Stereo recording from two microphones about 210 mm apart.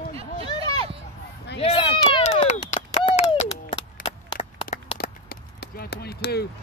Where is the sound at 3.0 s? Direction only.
25° left (ahead or behind).